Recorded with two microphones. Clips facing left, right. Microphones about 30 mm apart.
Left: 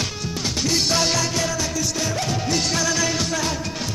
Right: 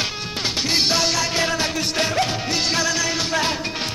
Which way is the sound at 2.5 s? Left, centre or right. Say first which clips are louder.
Right 1 dB; right.